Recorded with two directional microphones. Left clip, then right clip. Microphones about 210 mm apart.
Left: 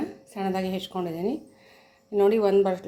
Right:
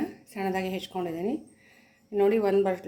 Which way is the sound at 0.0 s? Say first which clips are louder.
Left 1 dB; centre (ahead or behind).